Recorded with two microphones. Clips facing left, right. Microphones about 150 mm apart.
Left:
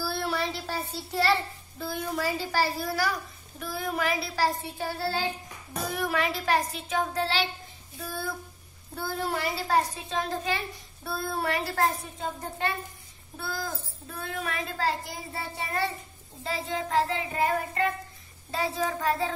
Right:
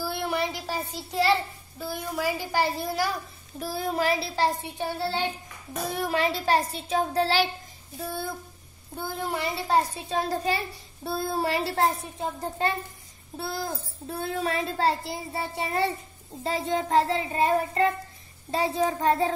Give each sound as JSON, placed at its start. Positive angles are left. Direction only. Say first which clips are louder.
{"t": 0.0, "sound": "a child's voice", "louder": "right 2 dB", "side_deg": -15}
{"t": 8.0, "sound": "a child's voice", "louder": "right 2 dB", "side_deg": -25}